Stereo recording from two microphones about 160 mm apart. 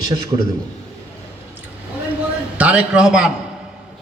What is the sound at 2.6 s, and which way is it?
Speech, 5° right (ahead or behind).